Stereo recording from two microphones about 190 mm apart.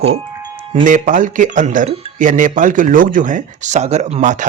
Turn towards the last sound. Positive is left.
turn(degrees=-40)  # may be behind; listen again after turning